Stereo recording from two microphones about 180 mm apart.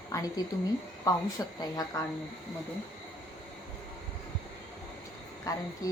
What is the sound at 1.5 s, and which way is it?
Speech, 20° left (ahead or behind).